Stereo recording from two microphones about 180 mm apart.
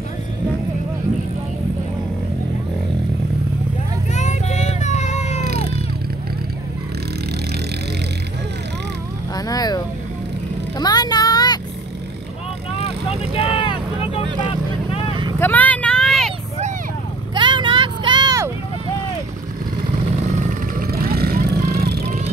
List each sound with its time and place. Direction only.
4.1 s vehicle: 40° left (ahead or behind)
5.4 s music: 55° right (ahead or behind)
9.3 s vehicle: 20° left (ahead or behind)
10.8 s vehicle: 20° left (ahead or behind)
12.8 s vehicle: 30° left (ahead or behind)
15.3 s vehicle: 10° left (ahead or behind)
17.3 s vehicle: 25° right (ahead or behind)
20.3 s vehicle: 55° right (ahead or behind)